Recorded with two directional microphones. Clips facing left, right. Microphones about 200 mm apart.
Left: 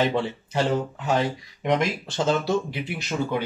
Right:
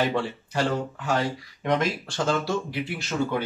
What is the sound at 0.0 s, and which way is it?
Speech, 20° left (ahead or behind).